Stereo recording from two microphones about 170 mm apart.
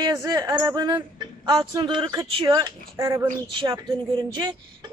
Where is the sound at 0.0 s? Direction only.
20° right (ahead or behind).